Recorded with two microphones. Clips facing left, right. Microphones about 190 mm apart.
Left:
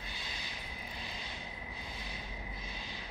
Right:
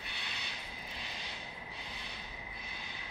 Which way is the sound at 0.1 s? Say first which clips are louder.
Even; 70° right (ahead or behind).